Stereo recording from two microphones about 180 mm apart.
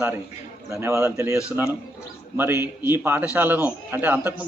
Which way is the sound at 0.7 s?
15° right (ahead or behind).